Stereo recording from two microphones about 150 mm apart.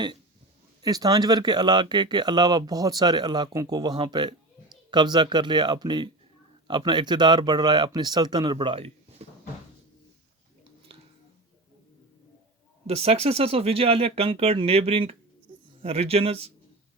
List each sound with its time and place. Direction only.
0.8 s speech: 25° right (ahead or behind)
10.9 s a sound: 40° right (ahead or behind)
12.9 s speech: 40° right (ahead or behind)